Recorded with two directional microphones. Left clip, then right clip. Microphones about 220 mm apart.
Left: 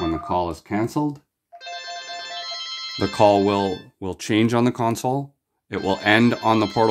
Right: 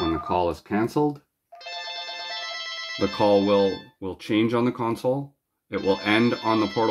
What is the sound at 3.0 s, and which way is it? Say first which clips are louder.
Speech: left 4 dB; 50° left (ahead or behind).